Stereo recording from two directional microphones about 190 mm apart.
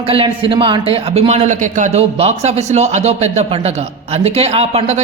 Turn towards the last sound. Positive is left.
turn(degrees=-35)  # may be behind; listen again after turning